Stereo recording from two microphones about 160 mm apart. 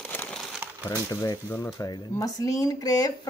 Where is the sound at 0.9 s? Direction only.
25° left (ahead or behind).